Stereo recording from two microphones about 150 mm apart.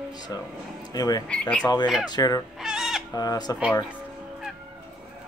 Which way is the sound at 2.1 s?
25° left (ahead or behind).